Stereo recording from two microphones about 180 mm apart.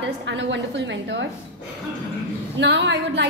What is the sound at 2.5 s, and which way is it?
Speech, 75° right (ahead or behind).